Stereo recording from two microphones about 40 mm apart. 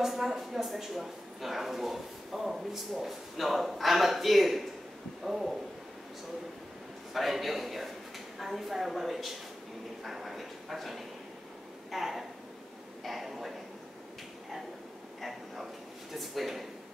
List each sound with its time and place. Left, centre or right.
0.0 s speech: centre
5.2 s a sound: centre
7.2 s speech: centre
15.1 s speech: centre